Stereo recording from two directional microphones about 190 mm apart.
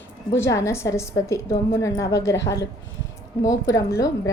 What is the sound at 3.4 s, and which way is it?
Speech, 15° left (ahead or behind).